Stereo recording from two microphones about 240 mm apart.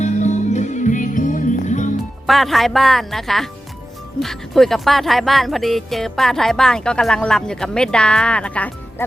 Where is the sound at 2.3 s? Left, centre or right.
Centre.